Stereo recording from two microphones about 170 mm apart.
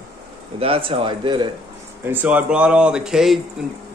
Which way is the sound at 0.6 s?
35° right (ahead or behind).